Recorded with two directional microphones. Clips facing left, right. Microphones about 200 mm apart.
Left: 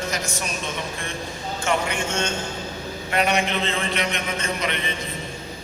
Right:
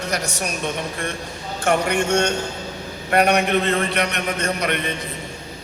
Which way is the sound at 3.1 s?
55° right (ahead or behind).